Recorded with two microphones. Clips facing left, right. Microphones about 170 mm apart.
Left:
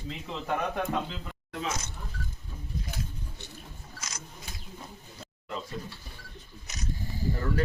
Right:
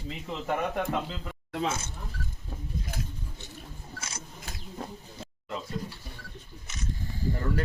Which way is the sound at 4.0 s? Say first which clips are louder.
Right 1 dB; 30° right (ahead or behind).